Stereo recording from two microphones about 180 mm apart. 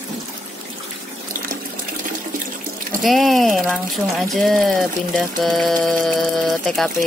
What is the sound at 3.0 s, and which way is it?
Speech, centre (ahead or behind).